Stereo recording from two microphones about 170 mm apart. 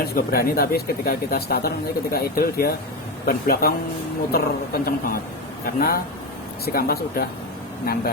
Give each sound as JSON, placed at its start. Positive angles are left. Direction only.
{"t": 0.0, "sound": "speech", "side_deg": 65}